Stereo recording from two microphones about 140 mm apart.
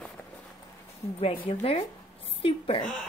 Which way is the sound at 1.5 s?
45° left (ahead or behind).